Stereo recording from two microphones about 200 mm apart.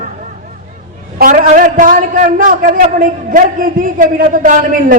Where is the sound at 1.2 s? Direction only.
40° right (ahead or behind).